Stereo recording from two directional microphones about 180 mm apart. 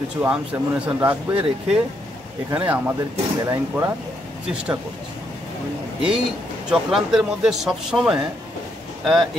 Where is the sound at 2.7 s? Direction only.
10° right (ahead or behind).